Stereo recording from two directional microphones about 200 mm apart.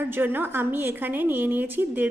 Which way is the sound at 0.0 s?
10° right (ahead or behind).